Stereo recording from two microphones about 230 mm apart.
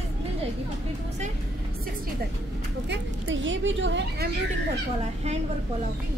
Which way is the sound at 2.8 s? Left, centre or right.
Right.